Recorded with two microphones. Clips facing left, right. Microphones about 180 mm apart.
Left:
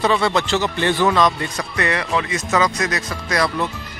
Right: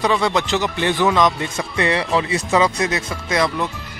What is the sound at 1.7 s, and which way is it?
Speech, 25° right (ahead or behind).